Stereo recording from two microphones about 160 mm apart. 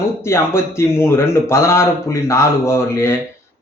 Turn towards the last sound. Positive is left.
turn(degrees=15)  # may be behind; listen again after turning